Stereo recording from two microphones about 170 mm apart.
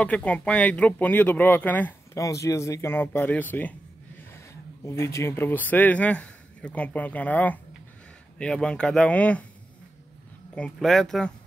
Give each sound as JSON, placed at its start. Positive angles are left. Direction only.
{"t": 0.0, "sound": "speech", "side_deg": 10}
{"t": 4.8, "sound": "speech", "side_deg": 15}
{"t": 10.5, "sound": "speech", "side_deg": 5}